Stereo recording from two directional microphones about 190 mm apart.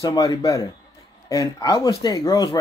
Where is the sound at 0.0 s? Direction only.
20° left (ahead or behind).